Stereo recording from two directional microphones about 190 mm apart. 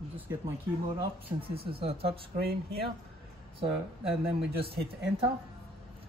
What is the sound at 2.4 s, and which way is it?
Speech, 55° right (ahead or behind).